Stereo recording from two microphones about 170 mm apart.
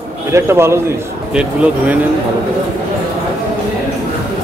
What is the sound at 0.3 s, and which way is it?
Speech, 15° right (ahead or behind).